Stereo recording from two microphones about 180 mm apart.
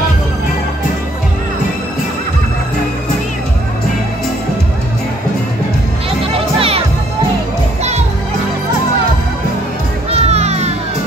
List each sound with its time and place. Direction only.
6.3 s music: 30° right (ahead or behind)
10.1 s music: 35° right (ahead or behind)